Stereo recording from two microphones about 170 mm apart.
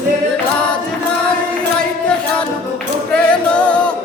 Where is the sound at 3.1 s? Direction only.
5° left (ahead or behind).